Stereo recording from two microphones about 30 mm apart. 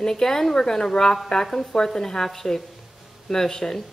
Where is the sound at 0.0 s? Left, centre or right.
Centre.